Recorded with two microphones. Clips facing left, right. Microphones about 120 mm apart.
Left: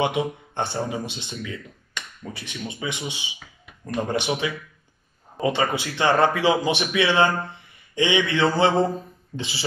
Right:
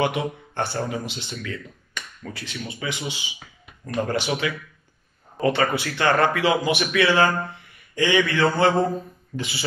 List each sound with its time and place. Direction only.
0.0 s speech: 20° left (ahead or behind)